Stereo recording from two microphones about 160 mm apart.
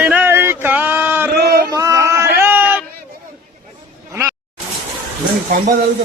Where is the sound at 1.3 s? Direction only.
75° right (ahead or behind).